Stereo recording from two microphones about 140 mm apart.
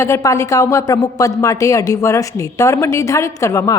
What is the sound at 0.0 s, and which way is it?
A woman's voice, 20° left (ahead or behind).